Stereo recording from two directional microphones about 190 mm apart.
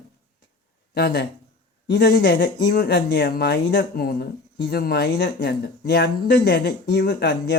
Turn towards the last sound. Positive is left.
turn(degrees=60)  # may be behind; listen again after turning